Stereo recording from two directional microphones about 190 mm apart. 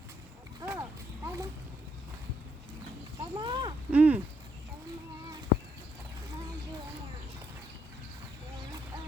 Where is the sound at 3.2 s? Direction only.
25° right (ahead or behind).